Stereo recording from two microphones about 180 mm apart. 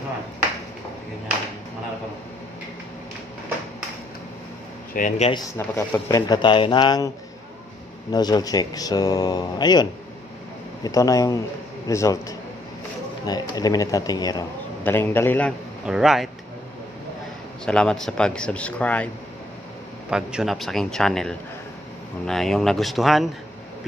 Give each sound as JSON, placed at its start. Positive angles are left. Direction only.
{"t": 4.9, "sound": "speech", "side_deg": 45}
{"t": 5.3, "sound": "speech", "side_deg": 20}
{"t": 8.1, "sound": "a man's voice", "side_deg": 20}
{"t": 14.8, "sound": "a man's voice", "side_deg": 10}
{"t": 15.8, "sound": "speech", "side_deg": -5}
{"t": 17.6, "sound": "speech", "side_deg": 5}
{"t": 20.1, "sound": "speech", "side_deg": -5}